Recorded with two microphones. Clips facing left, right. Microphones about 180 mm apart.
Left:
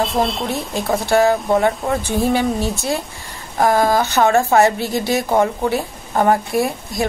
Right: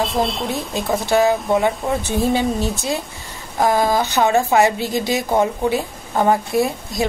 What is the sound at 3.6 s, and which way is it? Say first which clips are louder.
Speech: left 2 dB; 50° left (ahead or behind).